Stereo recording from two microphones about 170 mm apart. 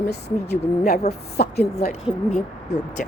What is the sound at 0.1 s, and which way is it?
A woman's voice, 70° left (ahead or behind).